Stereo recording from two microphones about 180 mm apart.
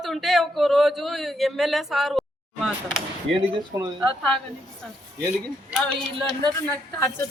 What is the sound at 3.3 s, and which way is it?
Speech, 25° right (ahead or behind).